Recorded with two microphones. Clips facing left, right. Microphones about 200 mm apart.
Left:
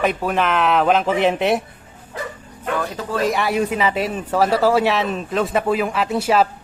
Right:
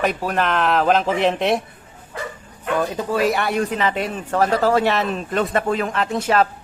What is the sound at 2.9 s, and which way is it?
Speech, 10° right (ahead or behind).